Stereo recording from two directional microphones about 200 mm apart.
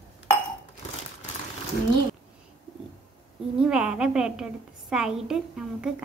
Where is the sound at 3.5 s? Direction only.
5° right (ahead or behind).